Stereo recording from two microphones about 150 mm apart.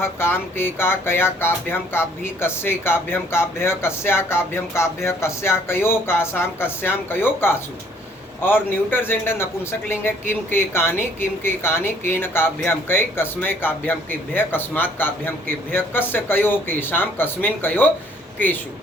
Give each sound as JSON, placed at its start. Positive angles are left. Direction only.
{"t": 0.0, "sound": "speech", "side_deg": 15}